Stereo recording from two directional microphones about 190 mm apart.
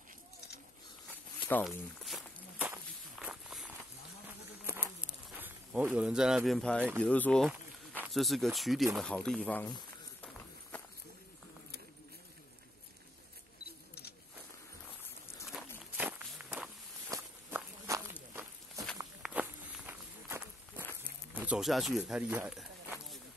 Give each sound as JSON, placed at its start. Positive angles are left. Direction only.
{"t": 1.1, "sound": "walk", "side_deg": 5}
{"t": 7.0, "sound": "speech", "side_deg": 5}
{"t": 16.0, "sound": "walk", "side_deg": -10}
{"t": 19.2, "sound": "walk", "side_deg": -5}
{"t": 21.0, "sound": "a sound", "side_deg": -10}